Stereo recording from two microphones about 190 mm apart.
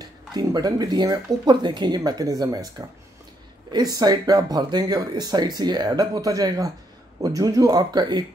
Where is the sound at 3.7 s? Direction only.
20° right (ahead or behind).